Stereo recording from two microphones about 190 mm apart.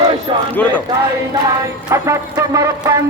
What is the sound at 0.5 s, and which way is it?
Speech, 10° left (ahead or behind).